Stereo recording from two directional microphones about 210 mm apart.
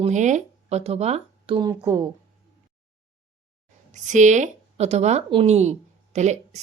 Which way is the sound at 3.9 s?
35° right (ahead or behind).